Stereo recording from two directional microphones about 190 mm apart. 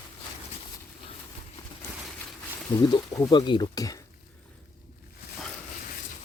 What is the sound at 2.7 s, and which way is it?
Speech, 25° left (ahead or behind).